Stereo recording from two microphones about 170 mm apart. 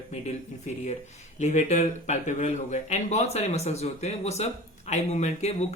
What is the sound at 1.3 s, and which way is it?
Speech, 40° left (ahead or behind).